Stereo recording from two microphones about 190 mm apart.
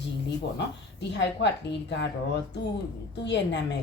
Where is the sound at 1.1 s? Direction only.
65° left (ahead or behind).